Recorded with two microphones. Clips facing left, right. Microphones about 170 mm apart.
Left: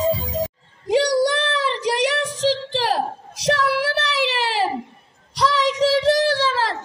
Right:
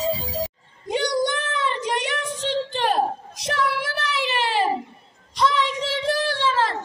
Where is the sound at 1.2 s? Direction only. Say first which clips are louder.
Left 4 dB; 80° left.